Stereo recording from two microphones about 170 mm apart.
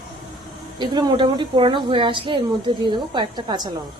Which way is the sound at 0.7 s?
25° right (ahead or behind).